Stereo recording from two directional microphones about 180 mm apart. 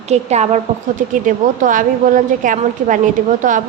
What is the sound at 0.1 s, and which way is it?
A woman's voice, 40° right (ahead or behind).